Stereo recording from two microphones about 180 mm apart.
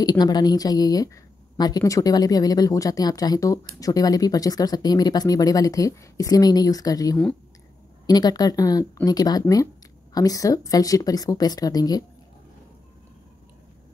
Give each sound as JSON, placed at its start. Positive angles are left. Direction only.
{"t": 0.0, "sound": "a woman's voice", "side_deg": 20}